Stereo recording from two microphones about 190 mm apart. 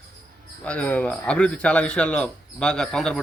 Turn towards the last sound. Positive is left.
turn(degrees=0)  # may be behind; listen again after turning